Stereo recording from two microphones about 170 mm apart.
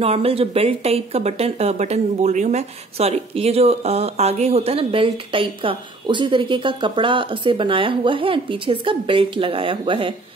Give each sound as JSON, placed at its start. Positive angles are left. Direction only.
{"t": 0.0, "sound": "speech", "side_deg": -35}